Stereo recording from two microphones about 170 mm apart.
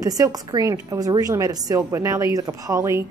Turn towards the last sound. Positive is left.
turn(degrees=-20)  # may be behind; listen again after turning